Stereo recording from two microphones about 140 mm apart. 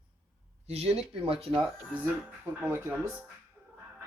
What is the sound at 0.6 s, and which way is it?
Speech, 45° right (ahead or behind).